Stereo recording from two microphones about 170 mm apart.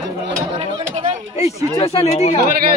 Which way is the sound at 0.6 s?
35° right (ahead or behind).